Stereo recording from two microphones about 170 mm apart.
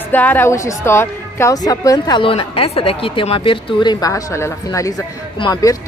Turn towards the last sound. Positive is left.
turn(degrees=20)  # may be behind; listen again after turning